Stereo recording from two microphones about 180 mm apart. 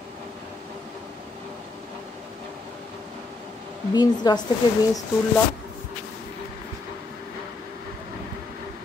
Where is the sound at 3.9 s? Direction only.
25° left (ahead or behind).